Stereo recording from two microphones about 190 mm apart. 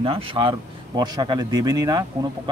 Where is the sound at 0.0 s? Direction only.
25° right (ahead or behind).